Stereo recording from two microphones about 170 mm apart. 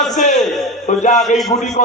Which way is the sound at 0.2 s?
45° left (ahead or behind).